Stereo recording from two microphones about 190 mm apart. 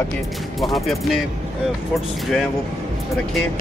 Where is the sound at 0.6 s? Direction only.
Centre (ahead or behind).